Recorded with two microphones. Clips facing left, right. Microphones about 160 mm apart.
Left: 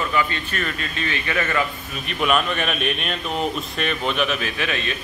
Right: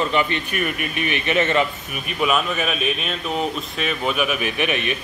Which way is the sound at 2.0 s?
5° right (ahead or behind).